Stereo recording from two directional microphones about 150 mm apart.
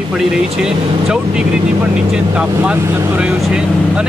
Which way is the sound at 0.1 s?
5° right (ahead or behind).